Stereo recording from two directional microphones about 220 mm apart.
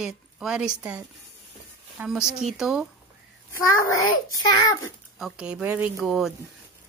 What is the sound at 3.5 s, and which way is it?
Speech, 15° left (ahead or behind).